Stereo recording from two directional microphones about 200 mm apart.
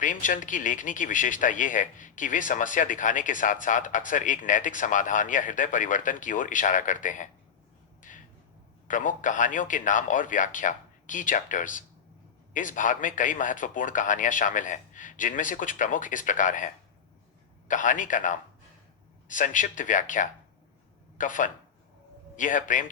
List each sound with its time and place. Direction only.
0.0 s speech: 40° left (ahead or behind)
8.1 s a sound: 40° left (ahead or behind)
8.9 s speech: 40° left (ahead or behind)